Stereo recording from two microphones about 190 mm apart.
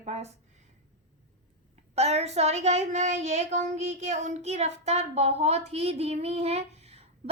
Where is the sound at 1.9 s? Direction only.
35° right (ahead or behind).